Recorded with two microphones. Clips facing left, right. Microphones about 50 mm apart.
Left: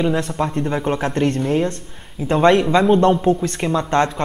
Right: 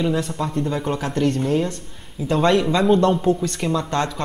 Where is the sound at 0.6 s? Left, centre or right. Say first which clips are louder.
Left 1 dB; left.